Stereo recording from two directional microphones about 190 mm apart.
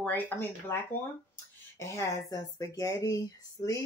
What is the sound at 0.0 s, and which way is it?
Speech, 10° left (ahead or behind).